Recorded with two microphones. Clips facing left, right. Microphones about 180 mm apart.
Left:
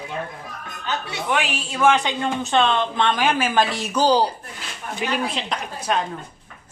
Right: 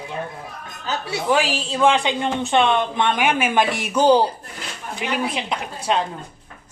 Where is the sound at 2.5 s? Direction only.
15° right (ahead or behind).